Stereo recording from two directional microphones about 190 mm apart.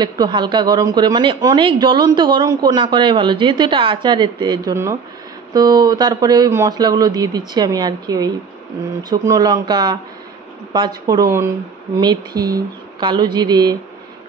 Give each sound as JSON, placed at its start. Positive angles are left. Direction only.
{"t": 0.0, "sound": "speech", "side_deg": -25}